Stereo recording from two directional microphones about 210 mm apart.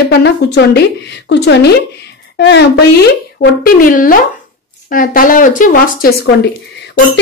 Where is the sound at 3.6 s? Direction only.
40° left (ahead or behind).